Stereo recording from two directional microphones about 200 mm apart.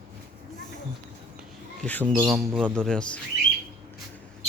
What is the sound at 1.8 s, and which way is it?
Speech, 5° left (ahead or behind).